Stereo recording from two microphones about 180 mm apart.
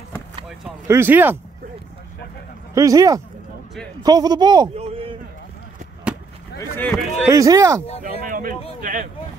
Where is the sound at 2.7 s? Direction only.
20° right (ahead or behind); by 5.1 s 35° right (ahead or behind).